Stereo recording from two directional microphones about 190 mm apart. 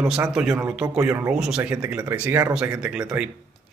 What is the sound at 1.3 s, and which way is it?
A man's voice, 5° right (ahead or behind).